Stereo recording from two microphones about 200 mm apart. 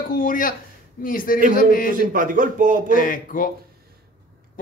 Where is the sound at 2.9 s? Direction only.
40° left (ahead or behind).